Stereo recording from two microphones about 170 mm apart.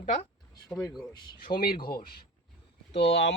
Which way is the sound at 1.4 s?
60° left (ahead or behind).